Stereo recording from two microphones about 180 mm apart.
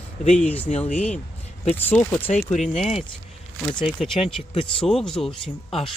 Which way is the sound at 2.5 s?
40° left (ahead or behind).